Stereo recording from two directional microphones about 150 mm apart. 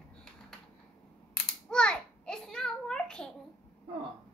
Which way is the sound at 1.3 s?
5° left (ahead or behind).